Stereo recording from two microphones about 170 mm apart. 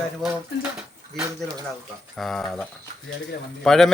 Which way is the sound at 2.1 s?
Centre (ahead or behind).